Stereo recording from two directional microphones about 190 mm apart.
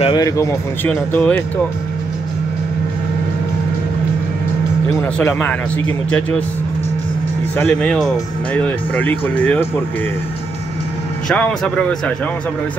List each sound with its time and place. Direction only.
0.0 s speech: 20° left (ahead or behind)
0.8 s speech: 10° left (ahead or behind)
5.0 s speech: 5° left (ahead or behind)
7.5 s speech: 5° left (ahead or behind)
11.2 s speech: 5° left (ahead or behind)